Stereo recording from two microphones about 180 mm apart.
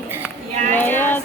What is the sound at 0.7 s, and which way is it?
Female singing, 10° left (ahead or behind).